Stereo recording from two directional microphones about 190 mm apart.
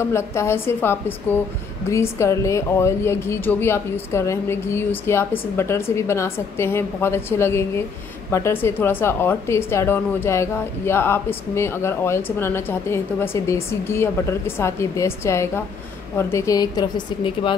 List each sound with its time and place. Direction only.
0.0 s a woman's voice: 15° left (ahead or behind)